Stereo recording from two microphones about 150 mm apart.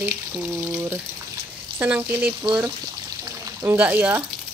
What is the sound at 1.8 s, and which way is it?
Speech, 10° right (ahead or behind).